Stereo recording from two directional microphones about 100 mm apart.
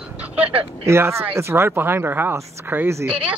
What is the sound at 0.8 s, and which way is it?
Speech, 25° right (ahead or behind).